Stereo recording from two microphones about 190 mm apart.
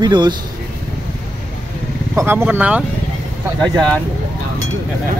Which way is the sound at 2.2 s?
10° right (ahead or behind).